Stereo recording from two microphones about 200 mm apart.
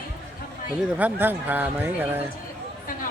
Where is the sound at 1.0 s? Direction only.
10° right (ahead or behind).